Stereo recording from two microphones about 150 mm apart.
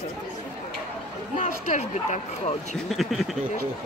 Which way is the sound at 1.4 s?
50° left (ahead or behind).